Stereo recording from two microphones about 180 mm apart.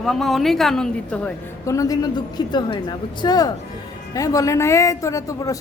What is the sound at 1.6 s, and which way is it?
A woman's voice, 20° left (ahead or behind).